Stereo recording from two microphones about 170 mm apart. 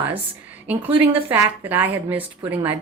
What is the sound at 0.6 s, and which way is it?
A woman's voice, 10° right (ahead or behind).